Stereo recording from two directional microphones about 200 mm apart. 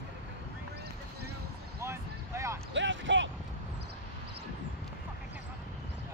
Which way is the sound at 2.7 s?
65° right (ahead or behind).